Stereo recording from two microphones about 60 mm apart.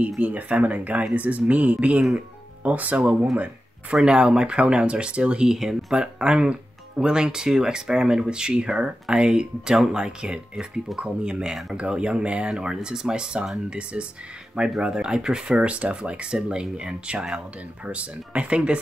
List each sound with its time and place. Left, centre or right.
0.2 s speech: right
2.1 s music: right
3.0 s speech: centre